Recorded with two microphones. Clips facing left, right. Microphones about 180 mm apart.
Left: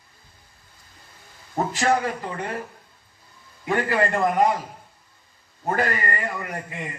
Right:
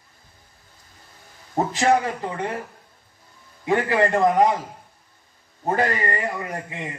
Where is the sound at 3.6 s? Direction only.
20° right (ahead or behind).